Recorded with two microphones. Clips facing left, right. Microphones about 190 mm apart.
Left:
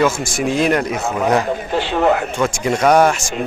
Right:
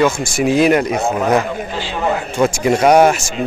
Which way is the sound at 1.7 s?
60° left (ahead or behind).